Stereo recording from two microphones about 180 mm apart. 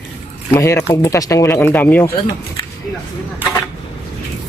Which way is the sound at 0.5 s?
15° left (ahead or behind).